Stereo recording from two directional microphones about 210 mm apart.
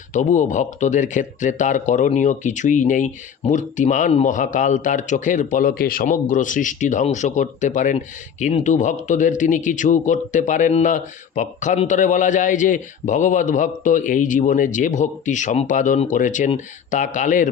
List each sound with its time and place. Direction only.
0.1 s speech: 35° left (ahead or behind)